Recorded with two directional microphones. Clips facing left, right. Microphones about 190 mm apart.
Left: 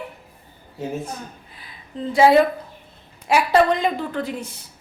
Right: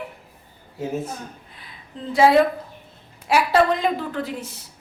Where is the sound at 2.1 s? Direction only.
Centre (ahead or behind).